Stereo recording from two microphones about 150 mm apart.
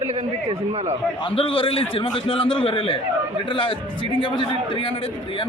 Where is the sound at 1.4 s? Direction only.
35° left (ahead or behind).